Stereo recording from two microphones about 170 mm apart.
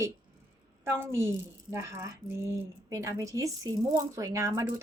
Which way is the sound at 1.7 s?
15° right (ahead or behind).